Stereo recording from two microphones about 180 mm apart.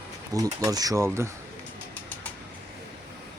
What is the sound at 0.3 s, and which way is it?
Speech, 20° right (ahead or behind).